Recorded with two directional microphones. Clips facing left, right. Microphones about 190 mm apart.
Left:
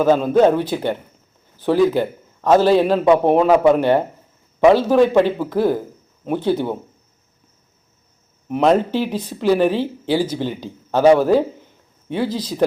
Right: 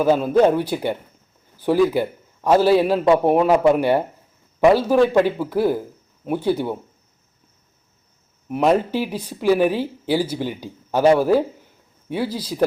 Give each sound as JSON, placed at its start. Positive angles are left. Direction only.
{"t": 0.0, "sound": "a man's voice", "side_deg": -10}
{"t": 8.4, "sound": "speech", "side_deg": -5}
{"t": 12.0, "sound": "speech", "side_deg": -10}